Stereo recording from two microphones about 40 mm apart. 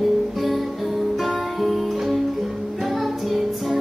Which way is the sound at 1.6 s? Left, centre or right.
Centre.